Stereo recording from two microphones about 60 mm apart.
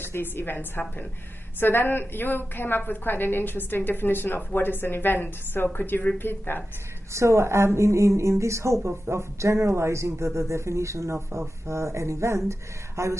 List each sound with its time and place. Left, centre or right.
0.0 s a woman's voice: left
7.2 s speech: right